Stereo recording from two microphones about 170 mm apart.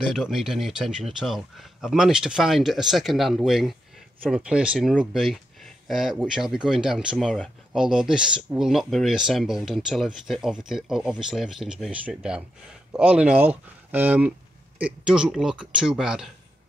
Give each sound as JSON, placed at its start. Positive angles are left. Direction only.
{"t": 0.1, "sound": "speech", "side_deg": 0}